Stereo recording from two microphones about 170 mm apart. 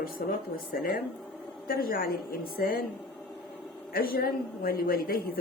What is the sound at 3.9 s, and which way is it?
Speech, 60° left (ahead or behind).